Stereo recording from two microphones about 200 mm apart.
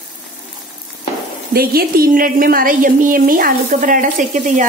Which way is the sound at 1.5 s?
50° right (ahead or behind).